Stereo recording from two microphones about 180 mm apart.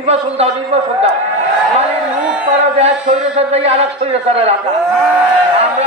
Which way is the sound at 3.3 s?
35° right (ahead or behind).